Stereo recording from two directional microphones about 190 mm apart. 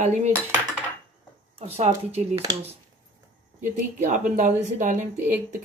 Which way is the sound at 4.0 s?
40° right (ahead or behind).